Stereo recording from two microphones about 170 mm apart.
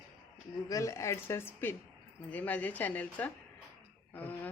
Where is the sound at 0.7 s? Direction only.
20° left (ahead or behind).